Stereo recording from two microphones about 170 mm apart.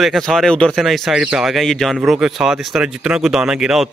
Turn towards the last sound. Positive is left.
turn(degrees=-5)  # may be behind; listen again after turning